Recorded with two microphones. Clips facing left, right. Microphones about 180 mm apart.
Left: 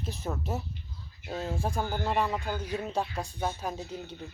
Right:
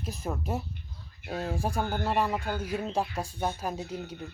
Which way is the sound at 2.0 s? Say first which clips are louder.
Right 1 dB; centre (ahead or behind).